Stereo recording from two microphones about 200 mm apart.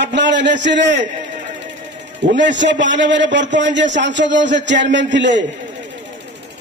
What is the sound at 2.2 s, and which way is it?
A man's voice, 65° right (ahead or behind).